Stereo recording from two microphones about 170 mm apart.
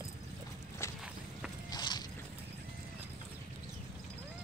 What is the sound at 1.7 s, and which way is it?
Walk, 25° left (ahead or behind).